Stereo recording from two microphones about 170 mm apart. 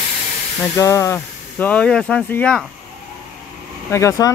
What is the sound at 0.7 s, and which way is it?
Speech, 15° left (ahead or behind).